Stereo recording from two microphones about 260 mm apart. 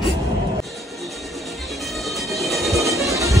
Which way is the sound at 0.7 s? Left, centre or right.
Centre.